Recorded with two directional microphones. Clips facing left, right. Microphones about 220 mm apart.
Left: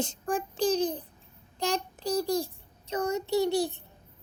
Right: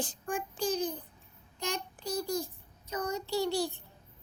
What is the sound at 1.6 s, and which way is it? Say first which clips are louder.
Child singing: left 6 dB; 35° left (ahead or behind).